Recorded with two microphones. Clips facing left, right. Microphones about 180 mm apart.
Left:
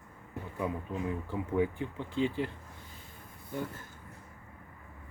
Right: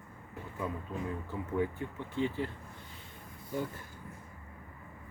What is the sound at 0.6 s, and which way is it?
Speech, 15° left (ahead or behind).